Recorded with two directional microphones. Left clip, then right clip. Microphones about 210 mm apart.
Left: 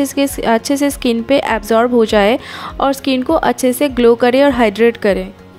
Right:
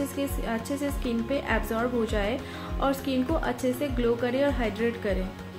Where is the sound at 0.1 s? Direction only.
45° left (ahead or behind).